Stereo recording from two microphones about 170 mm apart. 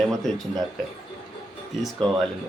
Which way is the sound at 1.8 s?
Centre (ahead or behind).